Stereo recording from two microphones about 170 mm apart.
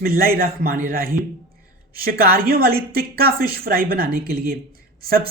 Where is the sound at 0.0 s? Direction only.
60° right (ahead or behind).